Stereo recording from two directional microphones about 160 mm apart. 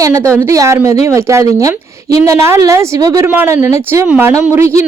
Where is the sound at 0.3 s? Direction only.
20° right (ahead or behind).